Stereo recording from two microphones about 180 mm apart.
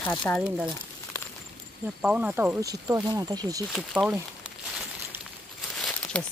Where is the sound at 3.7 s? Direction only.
5° right (ahead or behind).